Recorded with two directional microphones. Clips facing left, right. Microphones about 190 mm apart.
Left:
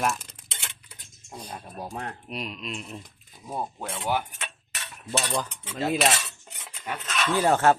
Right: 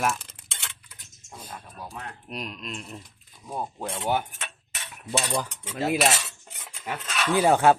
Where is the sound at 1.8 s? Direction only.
40° left (ahead or behind).